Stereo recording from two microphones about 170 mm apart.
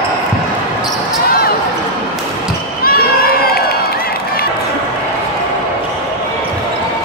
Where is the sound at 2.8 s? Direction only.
60° left (ahead or behind).